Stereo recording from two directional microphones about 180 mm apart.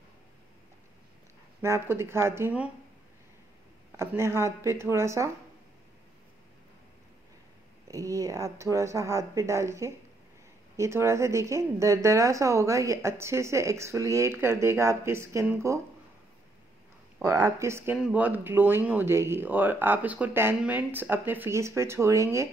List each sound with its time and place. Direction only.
1.6 s speech: 15° right (ahead or behind)
3.9 s speech: 15° right (ahead or behind)
7.9 s speech: 20° right (ahead or behind)
17.2 s speech: 20° right (ahead or behind)